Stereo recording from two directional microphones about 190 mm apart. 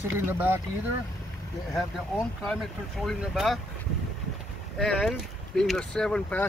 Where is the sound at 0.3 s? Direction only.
10° right (ahead or behind).